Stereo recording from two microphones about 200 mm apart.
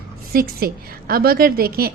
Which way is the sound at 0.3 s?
50° right (ahead or behind).